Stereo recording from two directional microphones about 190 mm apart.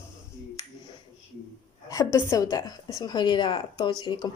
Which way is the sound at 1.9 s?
15° left (ahead or behind).